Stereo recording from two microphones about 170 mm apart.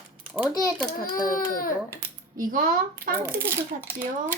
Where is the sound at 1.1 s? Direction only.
55° left (ahead or behind).